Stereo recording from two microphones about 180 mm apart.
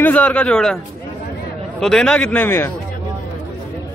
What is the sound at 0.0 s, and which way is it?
Speech, 10° left (ahead or behind).